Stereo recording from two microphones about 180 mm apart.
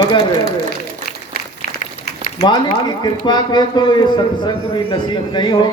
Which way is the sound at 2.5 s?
25° left (ahead or behind).